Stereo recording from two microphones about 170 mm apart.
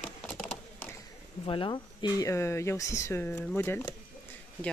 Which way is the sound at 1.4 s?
30° left (ahead or behind).